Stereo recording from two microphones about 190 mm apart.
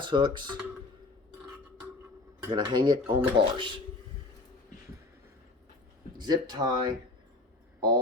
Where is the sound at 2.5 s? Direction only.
20° right (ahead or behind).